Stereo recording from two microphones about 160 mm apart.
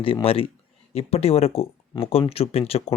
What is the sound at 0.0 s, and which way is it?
Speech, 35° left (ahead or behind).